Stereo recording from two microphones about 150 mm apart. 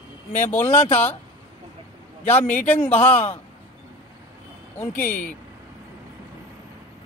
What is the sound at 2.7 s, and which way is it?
Speech, 10° left (ahead or behind).